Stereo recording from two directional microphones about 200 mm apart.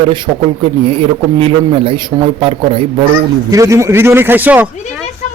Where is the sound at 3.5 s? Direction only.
15° right (ahead or behind).